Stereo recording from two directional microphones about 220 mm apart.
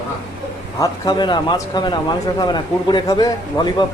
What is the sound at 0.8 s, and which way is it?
Speech, 20° left (ahead or behind).